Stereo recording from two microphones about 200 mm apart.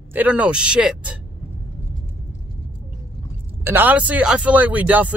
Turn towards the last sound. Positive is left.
turn(degrees=-10)  # may be behind; listen again after turning